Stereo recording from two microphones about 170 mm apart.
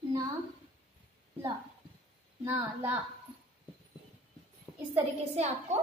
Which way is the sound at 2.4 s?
10° right (ahead or behind).